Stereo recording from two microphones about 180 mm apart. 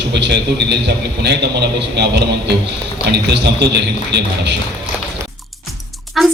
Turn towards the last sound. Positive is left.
turn(degrees=0)  # may be behind; listen again after turning